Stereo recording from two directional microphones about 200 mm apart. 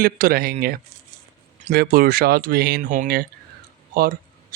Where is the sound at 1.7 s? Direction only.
50° right (ahead or behind).